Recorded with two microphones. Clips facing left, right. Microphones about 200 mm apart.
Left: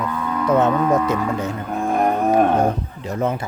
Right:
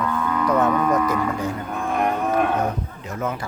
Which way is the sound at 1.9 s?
35° left (ahead or behind).